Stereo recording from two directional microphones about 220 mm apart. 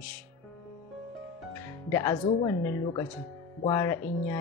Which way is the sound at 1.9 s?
15° left (ahead or behind).